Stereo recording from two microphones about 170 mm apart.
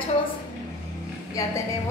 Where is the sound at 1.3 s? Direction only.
20° left (ahead or behind).